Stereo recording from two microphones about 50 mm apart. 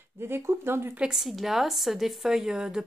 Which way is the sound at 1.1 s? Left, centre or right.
Centre.